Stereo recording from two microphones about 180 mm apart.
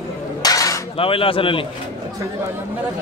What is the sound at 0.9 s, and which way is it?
Speech, 30° left (ahead or behind).